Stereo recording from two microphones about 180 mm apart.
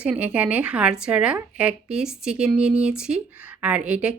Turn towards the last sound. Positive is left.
turn(degrees=-5)  # may be behind; listen again after turning